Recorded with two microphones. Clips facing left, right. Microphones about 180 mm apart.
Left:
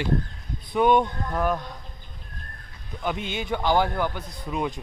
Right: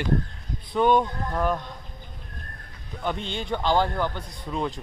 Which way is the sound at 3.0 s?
10° left (ahead or behind).